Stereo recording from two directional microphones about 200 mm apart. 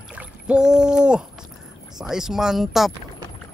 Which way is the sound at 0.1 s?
5° right (ahead or behind).